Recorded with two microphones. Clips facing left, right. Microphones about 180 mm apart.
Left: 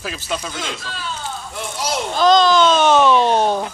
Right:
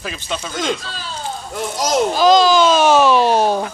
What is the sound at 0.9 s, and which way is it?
Speech, 35° right (ahead or behind).